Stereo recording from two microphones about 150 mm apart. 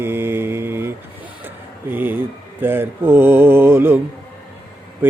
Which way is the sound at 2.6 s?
15° right (ahead or behind).